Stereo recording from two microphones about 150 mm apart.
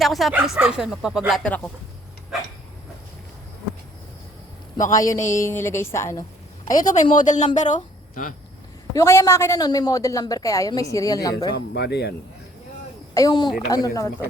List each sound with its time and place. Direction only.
0.0 s a woman's voice: centre (ahead or behind)
4.9 s a woman's voice: 20° left (ahead or behind)
6.7 s speech: 55° left (ahead or behind)
8.9 s a woman's voice: 20° left (ahead or behind)
11.5 s speech: 90° left
13.1 s a woman's voice: 25° left (ahead or behind)